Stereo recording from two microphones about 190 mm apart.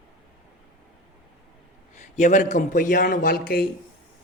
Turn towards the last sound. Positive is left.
turn(degrees=55)  # may be behind; listen again after turning